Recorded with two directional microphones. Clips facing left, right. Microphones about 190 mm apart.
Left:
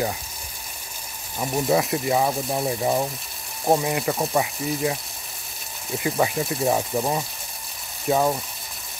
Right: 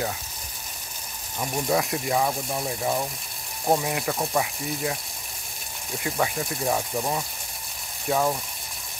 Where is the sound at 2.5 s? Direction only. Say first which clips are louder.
Left 4 dB; 25° left (ahead or behind).